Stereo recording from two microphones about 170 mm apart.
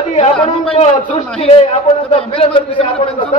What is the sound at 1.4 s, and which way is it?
A man's voice, 35° left (ahead or behind).